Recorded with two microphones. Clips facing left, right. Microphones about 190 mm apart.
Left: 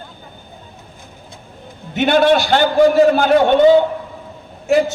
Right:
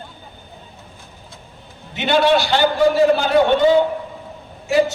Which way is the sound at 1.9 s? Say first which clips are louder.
Left 3 dB; 50° left (ahead or behind).